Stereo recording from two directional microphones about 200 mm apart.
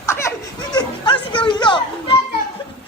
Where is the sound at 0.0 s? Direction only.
15° left (ahead or behind).